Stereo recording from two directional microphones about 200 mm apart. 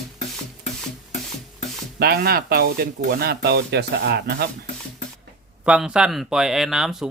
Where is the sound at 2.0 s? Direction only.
50° right (ahead or behind).